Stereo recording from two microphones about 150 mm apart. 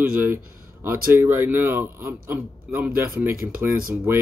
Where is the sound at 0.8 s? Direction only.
15° right (ahead or behind).